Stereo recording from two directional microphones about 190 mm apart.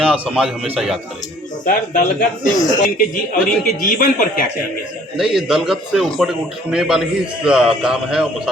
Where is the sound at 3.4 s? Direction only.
45° left (ahead or behind).